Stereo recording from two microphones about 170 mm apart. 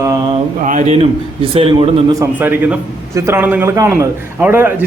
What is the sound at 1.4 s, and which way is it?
Speech, 35° right (ahead or behind).